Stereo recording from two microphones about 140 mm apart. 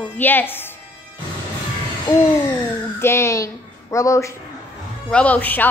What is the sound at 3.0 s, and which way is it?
Speech, 20° left (ahead or behind).